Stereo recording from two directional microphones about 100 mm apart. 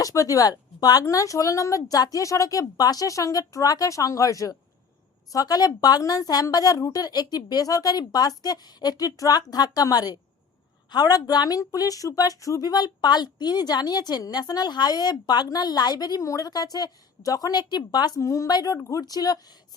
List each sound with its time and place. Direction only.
0.0 s a woman's voice: 35° left (ahead or behind)
18.2 s a woman's voice: 30° left (ahead or behind)